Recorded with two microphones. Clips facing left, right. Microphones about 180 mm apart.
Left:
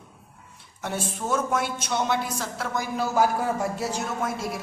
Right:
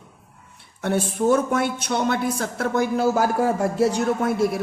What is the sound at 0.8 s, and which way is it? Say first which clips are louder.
Speech: right 8 dB; 60° right (ahead or behind).